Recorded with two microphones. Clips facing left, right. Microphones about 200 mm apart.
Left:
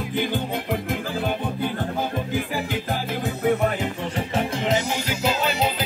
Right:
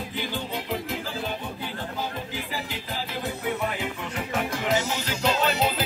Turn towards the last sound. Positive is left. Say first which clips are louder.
# left 1 dB
turn(degrees=0)  # may be behind; listen again after turning